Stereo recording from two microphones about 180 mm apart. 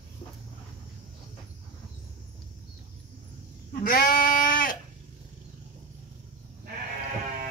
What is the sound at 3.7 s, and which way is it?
Sheep, 55° left (ahead or behind).